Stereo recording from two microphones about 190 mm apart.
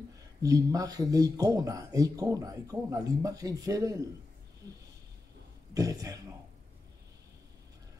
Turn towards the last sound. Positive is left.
turn(degrees=-20)  # may be behind; listen again after turning